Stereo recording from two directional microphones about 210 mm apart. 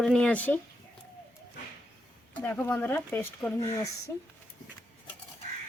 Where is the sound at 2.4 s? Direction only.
10° left (ahead or behind).